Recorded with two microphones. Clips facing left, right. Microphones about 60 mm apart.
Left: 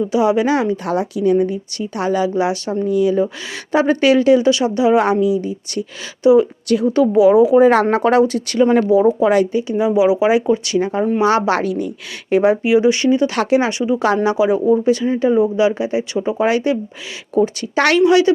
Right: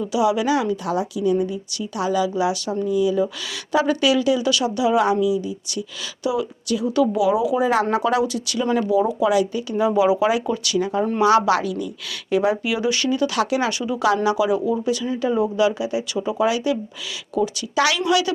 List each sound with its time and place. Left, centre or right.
0.1 s a woman's voice: left
3.7 s speech: left
4.4 s speech: left
7.7 s a woman's voice: left
8.9 s speech: left
9.5 s speech: left
10.4 s speech: left